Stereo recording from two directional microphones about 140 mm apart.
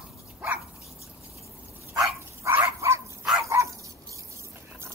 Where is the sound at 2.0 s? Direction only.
20° right (ahead or behind).